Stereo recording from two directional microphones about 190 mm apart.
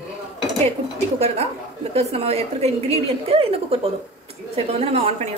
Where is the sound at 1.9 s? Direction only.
35° right (ahead or behind).